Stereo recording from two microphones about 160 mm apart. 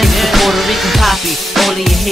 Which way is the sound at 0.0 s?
Centre (ahead or behind).